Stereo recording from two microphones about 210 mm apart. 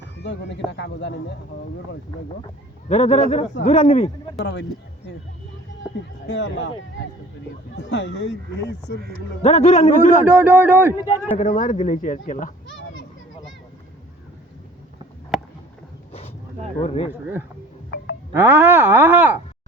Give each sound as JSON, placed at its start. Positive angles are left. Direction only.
{"t": 0.2, "sound": "speech", "side_deg": 60}
{"t": 2.9, "sound": "speech", "side_deg": 35}
{"t": 6.2, "sound": "speech", "side_deg": 55}
{"t": 7.8, "sound": "speech", "side_deg": 55}
{"t": 9.4, "sound": "speech", "side_deg": 30}
{"t": 10.2, "sound": "speech", "side_deg": -10}
{"t": 11.3, "sound": "speech", "side_deg": 40}
{"t": 12.7, "sound": "a sound", "side_deg": 65}
{"t": 15.3, "sound": "a sound", "side_deg": 0}
{"t": 16.8, "sound": "speech", "side_deg": 30}
{"t": 17.9, "sound": "music", "side_deg": 55}
{"t": 18.3, "sound": "speech", "side_deg": -10}